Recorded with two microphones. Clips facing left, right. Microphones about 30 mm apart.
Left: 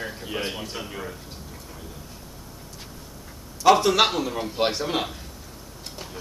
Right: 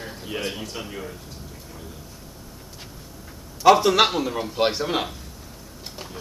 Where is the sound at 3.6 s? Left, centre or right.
Centre.